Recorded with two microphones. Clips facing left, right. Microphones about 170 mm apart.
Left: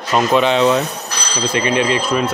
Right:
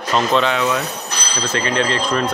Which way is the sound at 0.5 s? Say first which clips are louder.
Left 6 dB; 30° left (ahead or behind).